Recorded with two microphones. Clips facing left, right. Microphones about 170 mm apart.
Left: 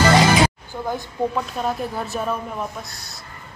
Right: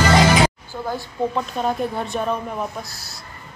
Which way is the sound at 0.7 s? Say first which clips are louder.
Even; 15° left (ahead or behind).